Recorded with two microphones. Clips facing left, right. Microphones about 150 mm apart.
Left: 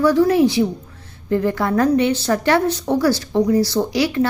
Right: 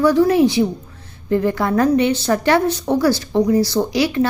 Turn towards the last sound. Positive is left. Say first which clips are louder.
# right 1 dB
turn(degrees=-20)  # may be behind; listen again after turning